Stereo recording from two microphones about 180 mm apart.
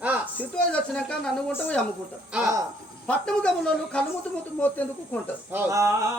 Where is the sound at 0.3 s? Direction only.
5° left (ahead or behind).